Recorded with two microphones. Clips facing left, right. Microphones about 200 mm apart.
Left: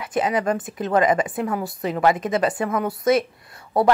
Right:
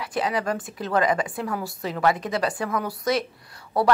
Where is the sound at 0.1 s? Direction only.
20° left (ahead or behind).